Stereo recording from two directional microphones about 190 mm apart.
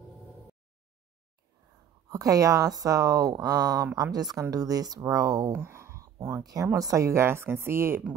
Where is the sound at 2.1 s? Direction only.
15° right (ahead or behind).